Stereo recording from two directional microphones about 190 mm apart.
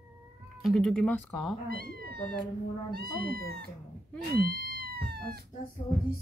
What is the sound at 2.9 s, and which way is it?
Speech, 50° right (ahead or behind).